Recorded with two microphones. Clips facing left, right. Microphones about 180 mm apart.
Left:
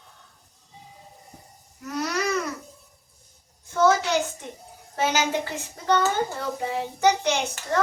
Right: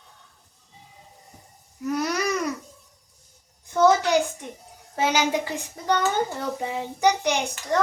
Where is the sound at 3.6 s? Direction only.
15° right (ahead or behind).